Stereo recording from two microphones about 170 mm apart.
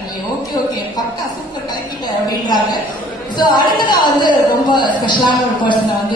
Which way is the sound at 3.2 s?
25° left (ahead or behind).